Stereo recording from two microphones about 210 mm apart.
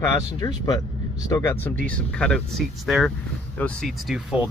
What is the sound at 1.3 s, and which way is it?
Speech, 10° left (ahead or behind).